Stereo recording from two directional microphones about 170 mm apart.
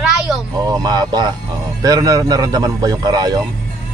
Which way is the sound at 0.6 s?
25° right (ahead or behind).